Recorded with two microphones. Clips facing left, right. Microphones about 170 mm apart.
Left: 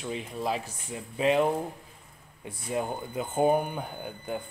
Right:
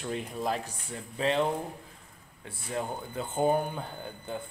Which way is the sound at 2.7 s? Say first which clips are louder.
Left 3 dB; 15° left (ahead or behind).